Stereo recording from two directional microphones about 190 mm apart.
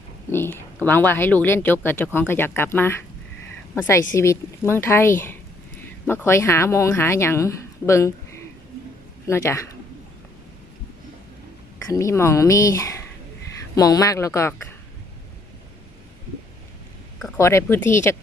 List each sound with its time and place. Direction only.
0.3 s speech: 10° left (ahead or behind)
11.9 s speech: 15° left (ahead or behind)
17.3 s speech: 15° left (ahead or behind)